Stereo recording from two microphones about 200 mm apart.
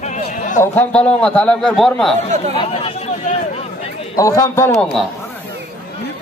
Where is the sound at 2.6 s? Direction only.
30° left (ahead or behind).